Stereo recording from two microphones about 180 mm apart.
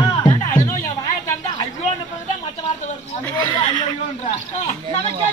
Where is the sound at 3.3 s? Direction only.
25° left (ahead or behind).